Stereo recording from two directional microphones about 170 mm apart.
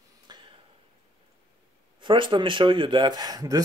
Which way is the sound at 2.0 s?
30° right (ahead or behind).